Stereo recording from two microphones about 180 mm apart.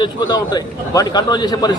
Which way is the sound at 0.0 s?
20° left (ahead or behind).